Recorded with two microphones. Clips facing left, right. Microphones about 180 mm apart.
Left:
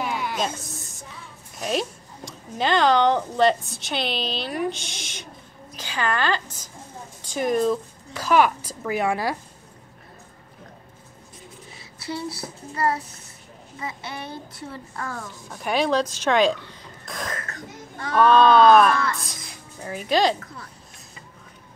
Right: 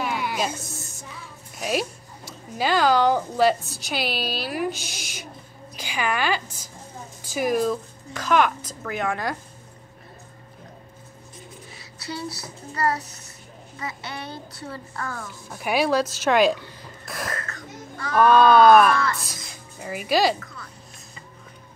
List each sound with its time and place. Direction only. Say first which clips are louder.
0.0 s music: even; 5° right (ahead or behind)
1.6 s a woman's voice: even; 5° right (ahead or behind)
12.7 s a child's voice: even; 25° left (ahead or behind)
15.5 s speech: even; 10° right (ahead or behind)
17.5 s a sound: even; 35° left (ahead or behind)
18.1 s speech: even; 10° right (ahead or behind)